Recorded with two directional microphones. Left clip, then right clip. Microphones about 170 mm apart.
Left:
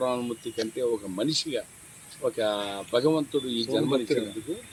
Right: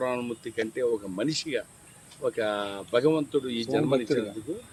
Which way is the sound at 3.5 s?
35° right (ahead or behind).